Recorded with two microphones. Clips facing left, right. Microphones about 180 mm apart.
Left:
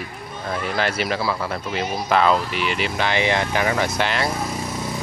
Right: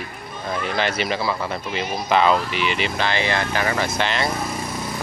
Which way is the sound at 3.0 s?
15° left (ahead or behind).